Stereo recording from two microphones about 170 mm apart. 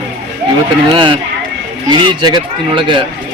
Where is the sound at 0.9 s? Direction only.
30° right (ahead or behind).